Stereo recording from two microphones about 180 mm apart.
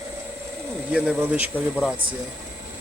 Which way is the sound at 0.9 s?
5° right (ahead or behind).